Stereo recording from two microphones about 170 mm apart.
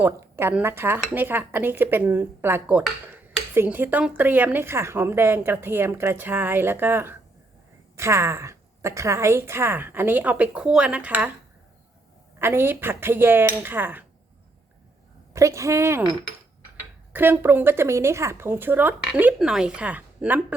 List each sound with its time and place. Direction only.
0.0 s speech: 10° right (ahead or behind)
12.4 s speech: 15° right (ahead or behind)
15.3 s speech: 20° right (ahead or behind)
17.1 s speech: 10° right (ahead or behind)